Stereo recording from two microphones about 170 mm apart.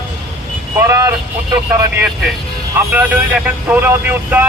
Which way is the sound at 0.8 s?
15° right (ahead or behind).